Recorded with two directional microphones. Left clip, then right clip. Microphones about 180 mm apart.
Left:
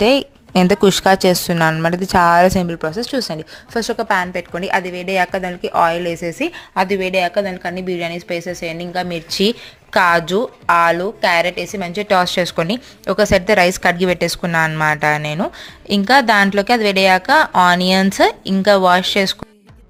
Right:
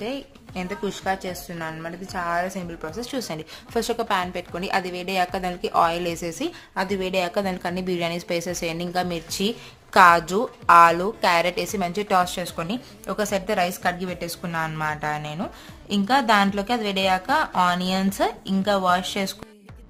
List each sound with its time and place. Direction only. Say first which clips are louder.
0.0 s speech: left 17 dB; 60° left (ahead or behind); by 9.2 s 10° left (ahead or behind)
9.3 s a woman's voice: left 12 dB; 30° left (ahead or behind)
9.9 s a woman's voice: left 2 dB; 15° left (ahead or behind)